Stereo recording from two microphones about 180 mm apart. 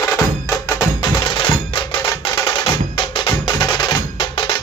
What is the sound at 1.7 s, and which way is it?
Music, 30° left (ahead or behind).